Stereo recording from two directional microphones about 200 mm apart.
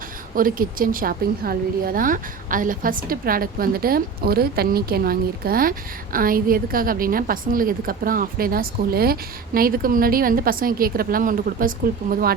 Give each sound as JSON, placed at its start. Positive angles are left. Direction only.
{"t": 0.3, "sound": "a woman's voice", "side_deg": -45}